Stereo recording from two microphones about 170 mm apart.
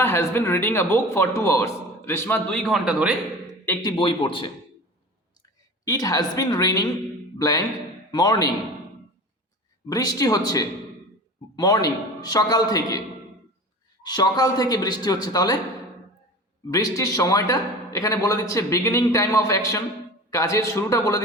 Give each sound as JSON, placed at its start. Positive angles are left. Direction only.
{"t": 0.0, "sound": "speech", "side_deg": 15}
{"t": 3.8, "sound": "a man's voice", "side_deg": 30}
{"t": 5.8, "sound": "a man's voice", "side_deg": 20}
{"t": 9.9, "sound": "a man's voice", "side_deg": 20}
{"t": 14.0, "sound": "a man's voice", "side_deg": 25}
{"t": 16.7, "sound": "a man's voice", "side_deg": 20}